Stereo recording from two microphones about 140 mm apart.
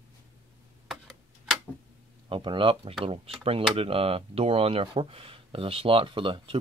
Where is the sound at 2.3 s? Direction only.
35° right (ahead or behind).